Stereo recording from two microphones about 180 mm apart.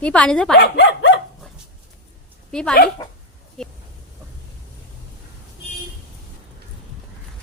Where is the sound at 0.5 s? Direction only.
75° left (ahead or behind).